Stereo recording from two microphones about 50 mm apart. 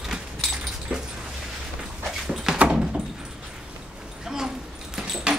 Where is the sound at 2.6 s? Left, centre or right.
Centre.